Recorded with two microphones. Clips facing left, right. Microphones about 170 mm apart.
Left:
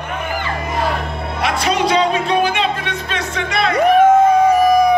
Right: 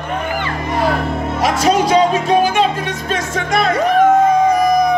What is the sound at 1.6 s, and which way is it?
Music, 45° right (ahead or behind).